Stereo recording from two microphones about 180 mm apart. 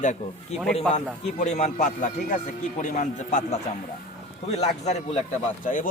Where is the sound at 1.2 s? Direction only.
40° left (ahead or behind).